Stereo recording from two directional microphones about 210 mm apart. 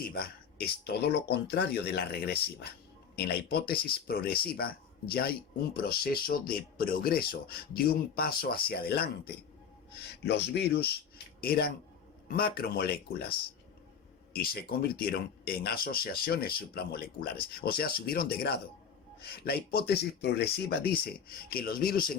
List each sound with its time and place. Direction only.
0.0 s speech: 45° left (ahead or behind)
14.3 s speech: 45° left (ahead or behind)